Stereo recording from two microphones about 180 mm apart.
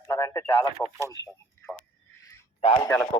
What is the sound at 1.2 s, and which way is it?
Speech, 75° left (ahead or behind).